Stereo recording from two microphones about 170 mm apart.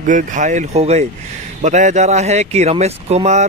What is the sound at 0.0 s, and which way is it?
Speech, 50° right (ahead or behind).